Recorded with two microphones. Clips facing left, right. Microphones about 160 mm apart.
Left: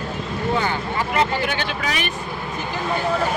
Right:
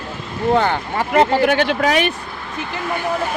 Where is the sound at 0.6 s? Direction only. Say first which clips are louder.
Right 4 dB; 55° right (ahead or behind).